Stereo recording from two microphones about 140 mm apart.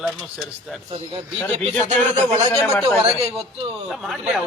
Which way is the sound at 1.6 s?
55° right (ahead or behind).